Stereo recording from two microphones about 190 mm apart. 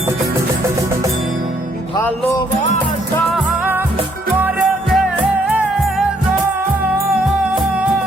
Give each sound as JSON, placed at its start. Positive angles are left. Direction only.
{"t": 0.3, "sound": "music", "side_deg": -15}
{"t": 3.3, "sound": "music", "side_deg": -10}